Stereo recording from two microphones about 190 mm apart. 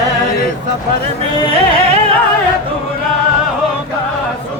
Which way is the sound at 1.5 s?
30° right (ahead or behind).